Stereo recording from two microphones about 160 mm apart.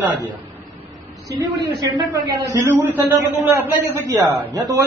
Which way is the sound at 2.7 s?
15° right (ahead or behind).